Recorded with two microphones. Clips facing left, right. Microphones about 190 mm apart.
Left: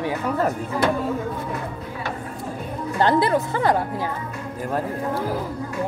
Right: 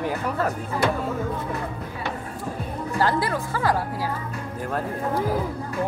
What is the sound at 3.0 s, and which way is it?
Speech, 25° left (ahead or behind).